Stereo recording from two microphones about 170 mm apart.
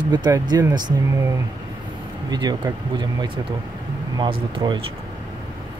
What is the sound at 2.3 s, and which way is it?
Speech, 25° right (ahead or behind).